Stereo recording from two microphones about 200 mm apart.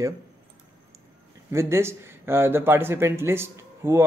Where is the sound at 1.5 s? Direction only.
15° right (ahead or behind).